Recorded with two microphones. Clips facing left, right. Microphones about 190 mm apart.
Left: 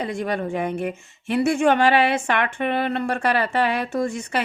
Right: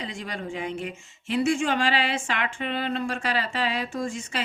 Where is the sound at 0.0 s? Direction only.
60° left (ahead or behind).